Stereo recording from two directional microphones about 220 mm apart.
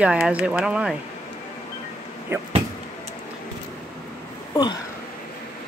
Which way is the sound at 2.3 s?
10° right (ahead or behind).